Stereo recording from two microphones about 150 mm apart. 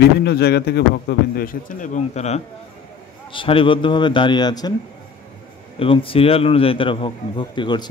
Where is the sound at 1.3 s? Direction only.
70° left (ahead or behind); by 2.4 s 45° left (ahead or behind).